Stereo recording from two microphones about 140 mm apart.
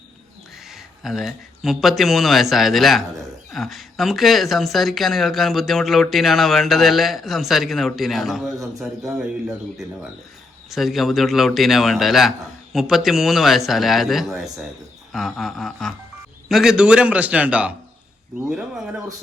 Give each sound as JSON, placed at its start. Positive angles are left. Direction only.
{"t": 0.7, "sound": "speech", "side_deg": 0}
{"t": 8.5, "sound": "a man's voice", "side_deg": -25}
{"t": 8.8, "sound": "a man's voice", "side_deg": 0}